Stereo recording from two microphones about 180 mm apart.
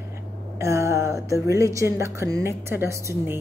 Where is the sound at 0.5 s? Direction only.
15° right (ahead or behind).